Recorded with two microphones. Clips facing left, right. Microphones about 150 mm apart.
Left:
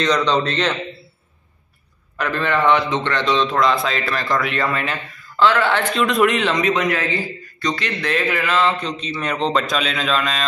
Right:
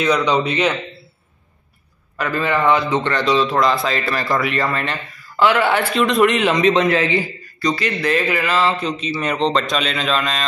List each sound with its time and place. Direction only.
0.0 s a man's voice: 10° right (ahead or behind)
2.1 s a man's voice: 5° right (ahead or behind)
5.3 s a man's voice: 10° right (ahead or behind)
6.0 s a man's voice: centre (ahead or behind)
6.5 s a man's voice: 25° right (ahead or behind)
7.6 s a man's voice: 5° right (ahead or behind)